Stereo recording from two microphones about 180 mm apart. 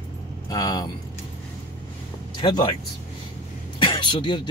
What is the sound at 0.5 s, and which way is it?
Speech, 20° left (ahead or behind).